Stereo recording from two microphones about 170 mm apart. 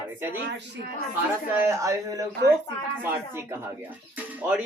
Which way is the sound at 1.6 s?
15° right (ahead or behind).